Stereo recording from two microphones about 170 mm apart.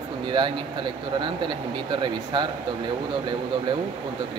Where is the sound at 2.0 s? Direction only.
25° right (ahead or behind).